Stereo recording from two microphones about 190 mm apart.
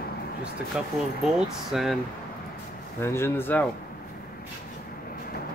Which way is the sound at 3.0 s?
15° left (ahead or behind).